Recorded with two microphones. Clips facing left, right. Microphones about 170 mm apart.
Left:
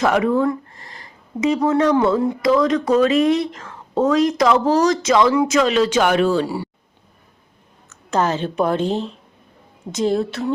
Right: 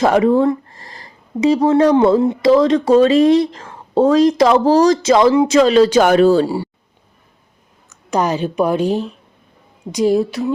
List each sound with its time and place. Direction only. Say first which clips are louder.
0.0 s speech: right 4 dB; 30° right (ahead or behind)
7.9 s a woman's voice: right 2 dB; 15° right (ahead or behind)